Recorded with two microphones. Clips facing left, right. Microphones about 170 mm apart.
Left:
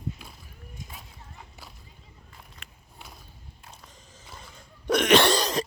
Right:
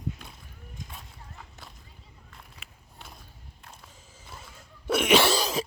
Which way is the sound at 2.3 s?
Centre (ahead or behind).